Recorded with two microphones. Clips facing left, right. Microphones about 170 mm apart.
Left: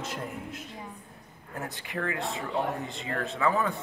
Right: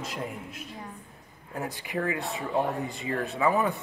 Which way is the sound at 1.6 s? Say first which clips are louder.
Right 3 dB; 15° right (ahead or behind).